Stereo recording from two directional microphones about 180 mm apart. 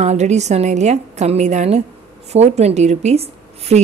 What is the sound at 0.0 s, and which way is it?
Speech, 40° right (ahead or behind).